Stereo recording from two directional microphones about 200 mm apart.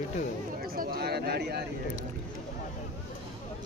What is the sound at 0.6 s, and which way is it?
Speech, 50° right (ahead or behind).